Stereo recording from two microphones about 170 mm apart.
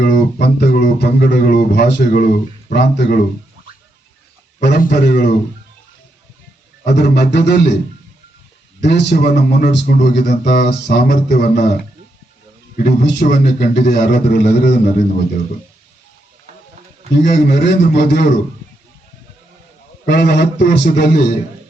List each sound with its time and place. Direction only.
0.0 s speech: 75° left (ahead or behind)
3.0 s a man's voice: 60° left (ahead or behind)
4.8 s speech: 70° left (ahead or behind)
6.8 s speech: 75° left (ahead or behind)
8.8 s speech: 80° left
12.7 s a man's voice: 60° left (ahead or behind)
13.4 s speech: 70° left (ahead or behind)
17.2 s speech: 65° left (ahead or behind)
20.1 s speech: 70° left (ahead or behind)